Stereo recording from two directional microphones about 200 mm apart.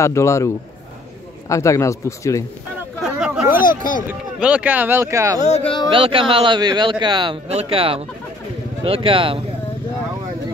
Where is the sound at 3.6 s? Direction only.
45° left (ahead or behind).